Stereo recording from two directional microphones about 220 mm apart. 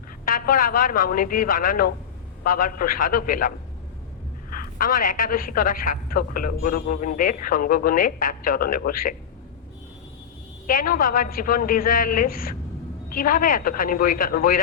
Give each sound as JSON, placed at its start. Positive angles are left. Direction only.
{"t": 0.3, "sound": "a woman's voice", "side_deg": 40}
{"t": 4.5, "sound": "a woman's voice", "side_deg": 40}
{"t": 10.7, "sound": "a woman's voice", "side_deg": 40}